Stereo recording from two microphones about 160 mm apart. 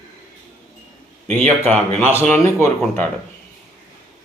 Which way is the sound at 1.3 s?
5° left (ahead or behind).